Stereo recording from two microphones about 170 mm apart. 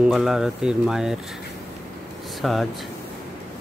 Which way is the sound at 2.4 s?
Centre (ahead or behind).